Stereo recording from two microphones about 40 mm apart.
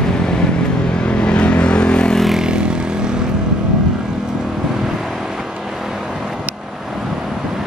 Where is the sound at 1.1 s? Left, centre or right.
Left.